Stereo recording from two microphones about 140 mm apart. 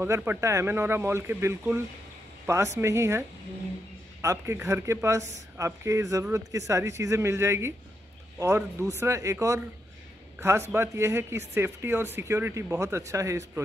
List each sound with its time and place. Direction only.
0.0 s speech: 15° right (ahead or behind)
10.7 s speech: 20° right (ahead or behind)